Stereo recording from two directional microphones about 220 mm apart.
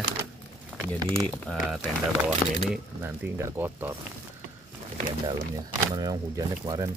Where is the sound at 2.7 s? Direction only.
10° right (ahead or behind).